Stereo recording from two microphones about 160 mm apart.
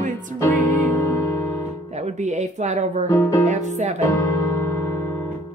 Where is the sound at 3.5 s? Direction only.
45° right (ahead or behind).